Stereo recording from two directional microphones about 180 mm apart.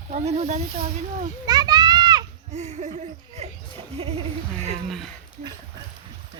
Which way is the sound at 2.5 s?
40° right (ahead or behind).